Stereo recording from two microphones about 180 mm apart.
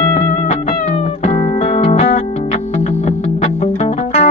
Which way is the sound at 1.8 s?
40° left (ahead or behind).